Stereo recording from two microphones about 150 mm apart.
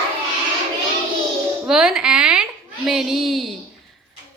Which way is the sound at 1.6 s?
5° right (ahead or behind).